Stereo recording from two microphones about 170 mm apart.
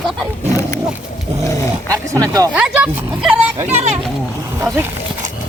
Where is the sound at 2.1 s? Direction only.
20° right (ahead or behind).